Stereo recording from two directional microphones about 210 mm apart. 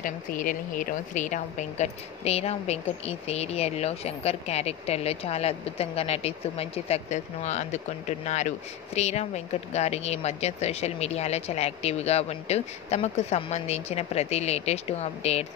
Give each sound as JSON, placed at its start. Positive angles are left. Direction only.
{"t": 0.0, "sound": "a woman's voice", "side_deg": 40}